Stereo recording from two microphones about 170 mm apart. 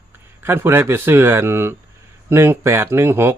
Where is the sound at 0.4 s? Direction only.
15° right (ahead or behind).